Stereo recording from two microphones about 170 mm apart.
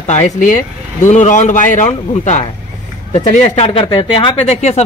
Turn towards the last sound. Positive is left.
turn(degrees=40)  # may be behind; listen again after turning